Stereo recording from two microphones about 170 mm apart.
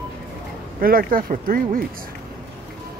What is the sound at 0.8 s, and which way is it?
Speech, 60° right (ahead or behind).